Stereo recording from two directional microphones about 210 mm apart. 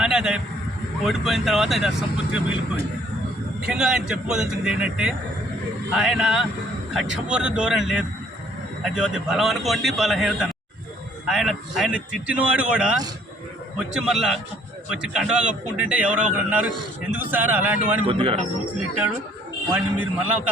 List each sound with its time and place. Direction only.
0.0 s vehicle: 5° right (ahead or behind)
1.0 s a man's voice: centre (ahead or behind)
18.0 s a man's voice: 25° right (ahead or behind)
19.7 s a man's voice: 10° right (ahead or behind)